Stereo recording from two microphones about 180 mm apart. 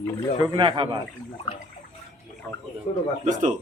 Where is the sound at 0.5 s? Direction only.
30° right (ahead or behind).